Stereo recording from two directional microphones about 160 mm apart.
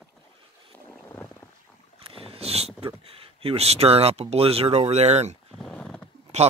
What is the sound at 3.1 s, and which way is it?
Speech, 35° right (ahead or behind).